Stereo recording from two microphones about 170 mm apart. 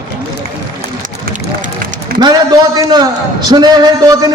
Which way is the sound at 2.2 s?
25° right (ahead or behind).